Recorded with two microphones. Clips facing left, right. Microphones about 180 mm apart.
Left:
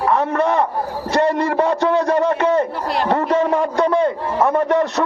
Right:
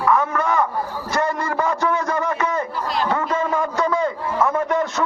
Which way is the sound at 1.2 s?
65° left (ahead or behind).